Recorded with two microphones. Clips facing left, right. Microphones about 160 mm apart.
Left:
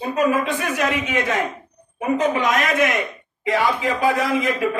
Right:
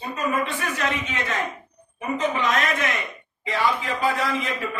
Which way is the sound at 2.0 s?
60° left (ahead or behind).